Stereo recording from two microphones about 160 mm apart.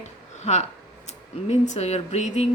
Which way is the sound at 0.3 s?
45° left (ahead or behind).